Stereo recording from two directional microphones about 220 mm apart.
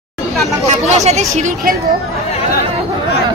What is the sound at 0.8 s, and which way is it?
Speech, 30° right (ahead or behind).